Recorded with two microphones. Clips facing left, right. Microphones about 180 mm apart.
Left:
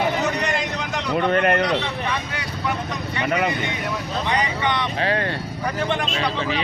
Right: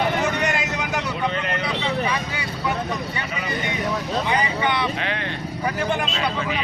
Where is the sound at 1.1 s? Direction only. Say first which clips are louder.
Left 7 dB; 60° left (ahead or behind).